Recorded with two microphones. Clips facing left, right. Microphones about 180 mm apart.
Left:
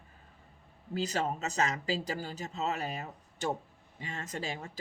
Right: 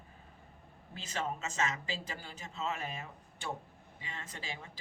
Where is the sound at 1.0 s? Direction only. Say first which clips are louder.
Left 6 dB; 40° left (ahead or behind).